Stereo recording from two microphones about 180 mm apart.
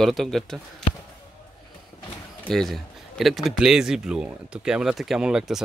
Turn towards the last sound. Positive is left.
turn(degrees=-5)  # may be behind; listen again after turning